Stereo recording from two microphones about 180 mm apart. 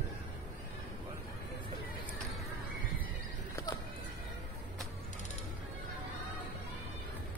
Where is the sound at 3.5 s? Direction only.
15° left (ahead or behind).